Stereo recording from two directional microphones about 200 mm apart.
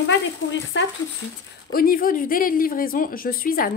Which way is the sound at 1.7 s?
45° left (ahead or behind).